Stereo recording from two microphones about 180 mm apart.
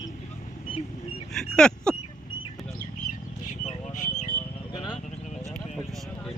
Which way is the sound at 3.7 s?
40° left (ahead or behind).